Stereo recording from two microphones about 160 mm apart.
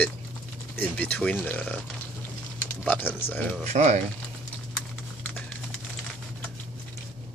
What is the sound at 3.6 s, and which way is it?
Speech, 45° right (ahead or behind).